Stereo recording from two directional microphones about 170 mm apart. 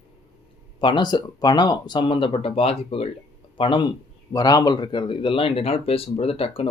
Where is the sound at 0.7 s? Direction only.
25° left (ahead or behind).